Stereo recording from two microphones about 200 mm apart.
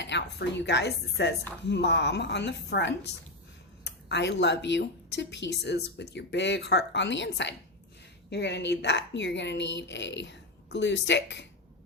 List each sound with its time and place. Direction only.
0.0 s speech: 60° left (ahead or behind)